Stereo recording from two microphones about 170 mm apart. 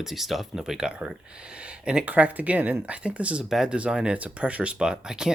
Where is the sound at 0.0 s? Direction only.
Centre (ahead or behind).